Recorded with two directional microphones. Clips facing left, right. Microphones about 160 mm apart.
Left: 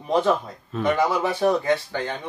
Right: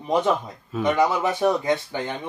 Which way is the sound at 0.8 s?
20° right (ahead or behind).